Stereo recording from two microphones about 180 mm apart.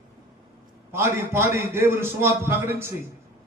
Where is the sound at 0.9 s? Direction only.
15° right (ahead or behind).